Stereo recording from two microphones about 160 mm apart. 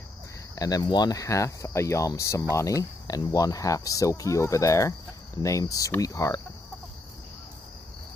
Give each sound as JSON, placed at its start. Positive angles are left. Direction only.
{"t": 0.6, "sound": "speech", "side_deg": 25}